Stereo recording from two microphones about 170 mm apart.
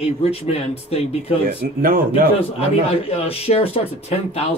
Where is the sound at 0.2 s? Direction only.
35° left (ahead or behind).